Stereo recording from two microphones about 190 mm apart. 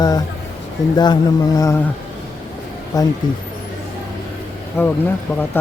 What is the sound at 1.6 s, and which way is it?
Speech, 15° left (ahead or behind).